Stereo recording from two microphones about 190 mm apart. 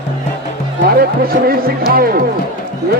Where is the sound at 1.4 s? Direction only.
50° right (ahead or behind).